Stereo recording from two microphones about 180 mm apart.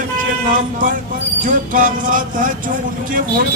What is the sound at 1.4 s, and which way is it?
Speech, 50° right (ahead or behind).